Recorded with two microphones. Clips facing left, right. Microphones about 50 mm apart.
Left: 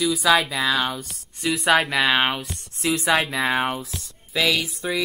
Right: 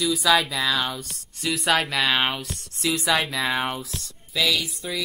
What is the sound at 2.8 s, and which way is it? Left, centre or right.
Mantra, left.